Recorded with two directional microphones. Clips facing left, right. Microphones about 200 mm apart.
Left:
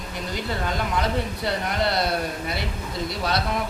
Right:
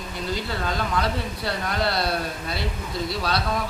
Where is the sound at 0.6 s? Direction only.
15° left (ahead or behind).